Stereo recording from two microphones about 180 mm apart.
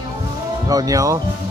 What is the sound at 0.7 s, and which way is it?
Speech, 20° right (ahead or behind).